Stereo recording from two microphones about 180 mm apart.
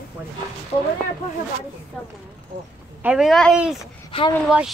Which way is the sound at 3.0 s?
5° right (ahead or behind).